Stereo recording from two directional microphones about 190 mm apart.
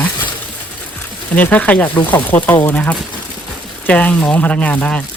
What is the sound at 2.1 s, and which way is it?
Speech, 10° left (ahead or behind).